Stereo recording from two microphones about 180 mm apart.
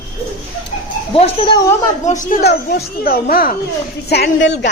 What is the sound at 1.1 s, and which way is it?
Speech, 30° left (ahead or behind).